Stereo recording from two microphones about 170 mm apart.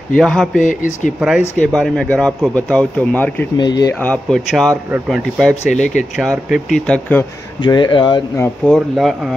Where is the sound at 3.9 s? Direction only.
5° left (ahead or behind).